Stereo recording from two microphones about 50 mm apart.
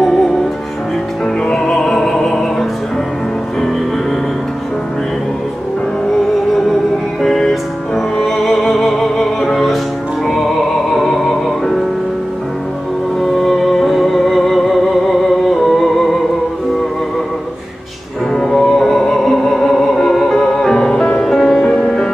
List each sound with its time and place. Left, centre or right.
0.0 s music: centre
6.5 s music: centre
13.2 s music: centre
18.3 s music: centre
21.6 s music: centre